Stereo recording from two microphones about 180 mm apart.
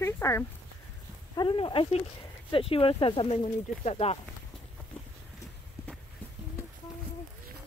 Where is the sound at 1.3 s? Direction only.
25° left (ahead or behind).